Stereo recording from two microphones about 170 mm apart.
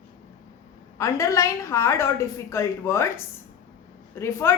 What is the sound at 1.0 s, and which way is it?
A woman's voice, 20° left (ahead or behind).